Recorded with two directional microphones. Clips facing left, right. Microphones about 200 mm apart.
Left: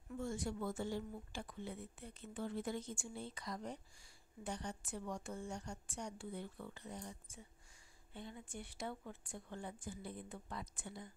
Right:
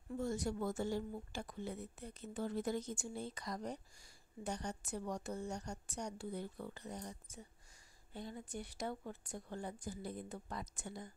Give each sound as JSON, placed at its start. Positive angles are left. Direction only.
{"t": 0.1, "sound": "a woman's voice", "side_deg": -40}